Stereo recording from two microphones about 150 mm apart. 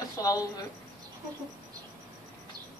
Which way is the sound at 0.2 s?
20° left (ahead or behind).